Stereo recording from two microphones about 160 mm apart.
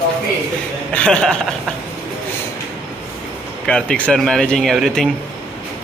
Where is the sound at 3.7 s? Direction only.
5° left (ahead or behind).